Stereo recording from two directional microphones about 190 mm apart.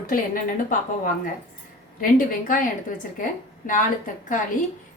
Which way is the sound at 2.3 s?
45° left (ahead or behind).